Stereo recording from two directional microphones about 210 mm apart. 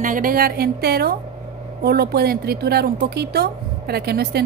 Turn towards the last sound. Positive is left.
turn(degrees=-50)  # may be behind; listen again after turning